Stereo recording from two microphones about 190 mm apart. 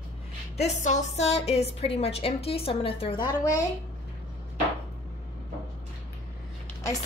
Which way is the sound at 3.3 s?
15° left (ahead or behind).